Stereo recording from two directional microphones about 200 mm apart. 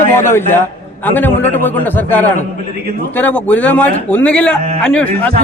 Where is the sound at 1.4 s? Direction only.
10° left (ahead or behind).